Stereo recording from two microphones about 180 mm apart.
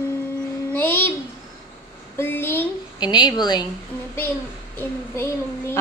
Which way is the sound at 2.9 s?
25° left (ahead or behind).